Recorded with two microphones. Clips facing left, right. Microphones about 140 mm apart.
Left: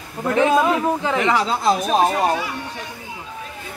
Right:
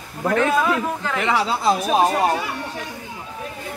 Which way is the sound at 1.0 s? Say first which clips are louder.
Left 2 dB; centre (ahead or behind).